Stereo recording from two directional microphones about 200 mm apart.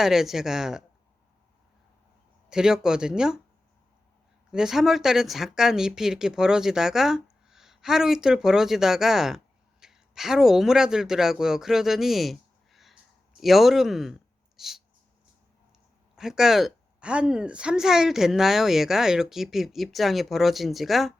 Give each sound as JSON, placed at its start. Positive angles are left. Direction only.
{"t": 0.0, "sound": "a woman's voice", "side_deg": 0}
{"t": 2.5, "sound": "a woman's voice", "side_deg": -5}
{"t": 4.5, "sound": "a woman's voice", "side_deg": 0}
{"t": 16.1, "sound": "a woman's voice", "side_deg": -5}